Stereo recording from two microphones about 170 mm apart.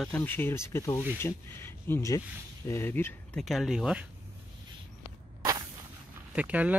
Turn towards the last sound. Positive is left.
turn(degrees=-10)  # may be behind; listen again after turning